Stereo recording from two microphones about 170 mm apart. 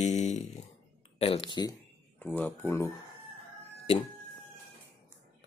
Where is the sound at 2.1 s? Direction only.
10° left (ahead or behind).